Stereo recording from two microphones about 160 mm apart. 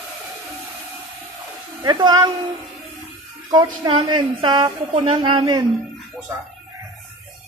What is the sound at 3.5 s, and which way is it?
Speech, 30° right (ahead or behind).